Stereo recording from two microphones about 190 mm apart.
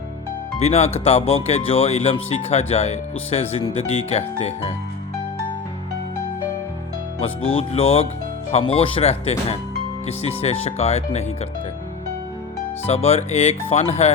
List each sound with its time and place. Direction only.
0.6 s speech: 30° left (ahead or behind)
7.5 s speech: 30° left (ahead or behind)
12.8 s speech: 35° left (ahead or behind)